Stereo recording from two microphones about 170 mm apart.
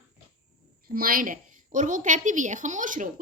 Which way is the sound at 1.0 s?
55° right (ahead or behind).